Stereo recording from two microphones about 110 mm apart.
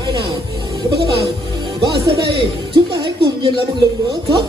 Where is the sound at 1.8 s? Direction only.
45° right (ahead or behind).